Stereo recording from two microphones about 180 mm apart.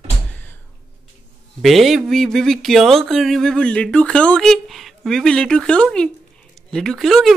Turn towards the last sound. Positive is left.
turn(degrees=0)  # may be behind; listen again after turning